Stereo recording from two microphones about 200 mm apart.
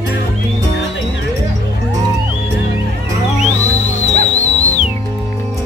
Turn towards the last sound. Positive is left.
turn(degrees=35)  # may be behind; listen again after turning